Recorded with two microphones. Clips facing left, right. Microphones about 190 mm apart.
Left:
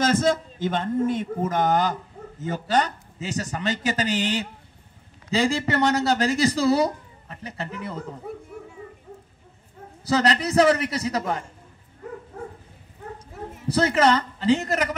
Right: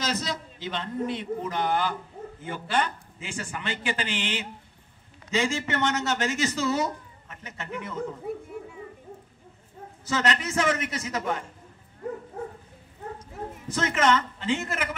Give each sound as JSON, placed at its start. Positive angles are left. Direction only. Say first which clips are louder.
{"t": 0.0, "sound": "a man's voice", "louder": "left 10 dB", "side_deg": 50}
{"t": 10.0, "sound": "speech", "louder": "left 5 dB", "side_deg": 35}
{"t": 13.7, "sound": "speech", "louder": "left 4 dB", "side_deg": 35}